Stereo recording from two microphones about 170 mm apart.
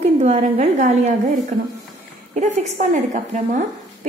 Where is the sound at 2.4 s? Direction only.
45° right (ahead or behind).